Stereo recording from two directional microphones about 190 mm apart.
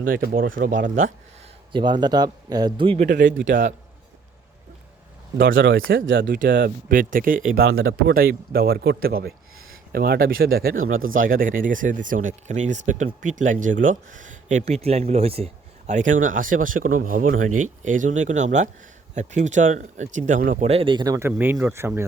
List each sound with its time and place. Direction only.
0.0 s speech: 45° right (ahead or behind)
1.7 s speech: 25° right (ahead or behind)
3.1 s speech: 65° right (ahead or behind)
5.5 s speech: 90° right
6.1 s speech: 50° right (ahead or behind)
7.7 s speech: 90° right
8.1 s speech: 50° right (ahead or behind)
10.8 s speech: 90° right
11.1 s speech: 45° right (ahead or behind); by 22.0 s 15° right (ahead or behind)